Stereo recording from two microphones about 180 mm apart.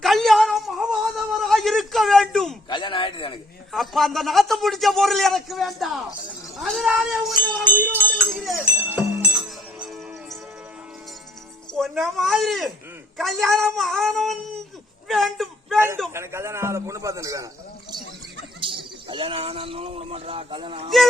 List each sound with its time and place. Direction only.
0.0 s a sound: centre (ahead or behind)
2.6 s a sound: 25° left (ahead or behind)
3.7 s a man's voice: centre (ahead or behind)
7.6 s speech: 10° left (ahead or behind)
8.3 s a man's voice: centre (ahead or behind)
8.7 s music: 10° right (ahead or behind)
11.7 s a man's voice: centre (ahead or behind)
16.1 s a man's voice: 15° right (ahead or behind)
18.6 s speech: 25° right (ahead or behind)